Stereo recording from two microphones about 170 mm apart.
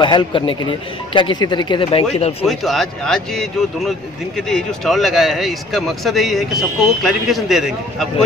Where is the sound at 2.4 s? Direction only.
Centre (ahead or behind).